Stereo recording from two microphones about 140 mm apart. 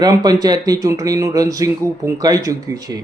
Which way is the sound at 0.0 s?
30° right (ahead or behind).